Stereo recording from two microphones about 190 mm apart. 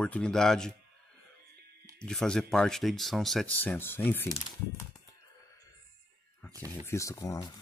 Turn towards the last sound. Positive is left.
turn(degrees=20)  # may be behind; listen again after turning